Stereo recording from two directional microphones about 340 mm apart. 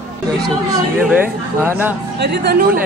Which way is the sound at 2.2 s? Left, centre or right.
Right.